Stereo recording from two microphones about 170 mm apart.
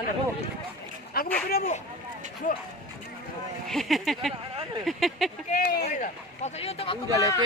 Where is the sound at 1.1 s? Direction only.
65° left (ahead or behind).